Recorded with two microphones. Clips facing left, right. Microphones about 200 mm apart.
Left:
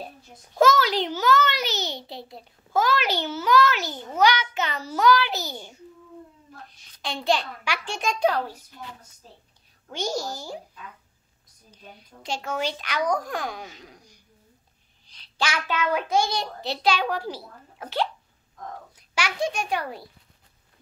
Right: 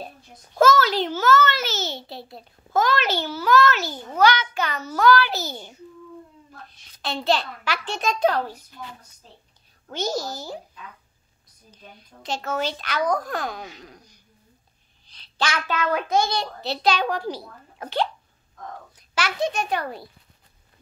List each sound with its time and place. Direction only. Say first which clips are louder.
0.6 s a child's voice: right 2 dB; 15° left (ahead or behind)
4.6 s a child's voice: right 1 dB; 25° left (ahead or behind)
5.0 s speech: right 2 dB; 15° left (ahead or behind)
7.0 s speech: right 1 dB; 15° left (ahead or behind)
9.8 s speech: right 2 dB; 15° left (ahead or behind)
11.7 s speech: even; 10° left (ahead or behind)
19.1 s speech: right 2 dB; 10° left (ahead or behind)